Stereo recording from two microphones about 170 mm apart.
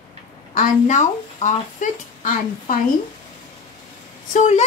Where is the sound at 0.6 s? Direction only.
45° left (ahead or behind).